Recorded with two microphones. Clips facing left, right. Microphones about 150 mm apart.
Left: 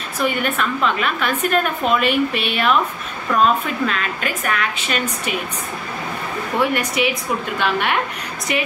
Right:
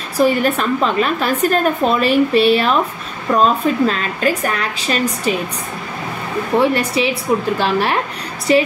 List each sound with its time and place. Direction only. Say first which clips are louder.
0.2 s a woman's voice: right 6 dB; 35° right (ahead or behind)
6.6 s a woman's voice: right 1 dB; 30° right (ahead or behind)